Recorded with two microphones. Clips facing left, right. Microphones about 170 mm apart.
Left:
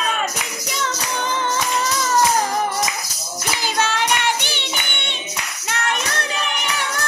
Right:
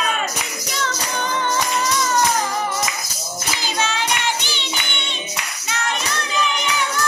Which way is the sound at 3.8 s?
60° left (ahead or behind).